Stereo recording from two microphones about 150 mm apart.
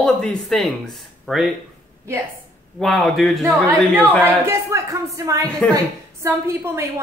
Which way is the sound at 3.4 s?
15° right (ahead or behind).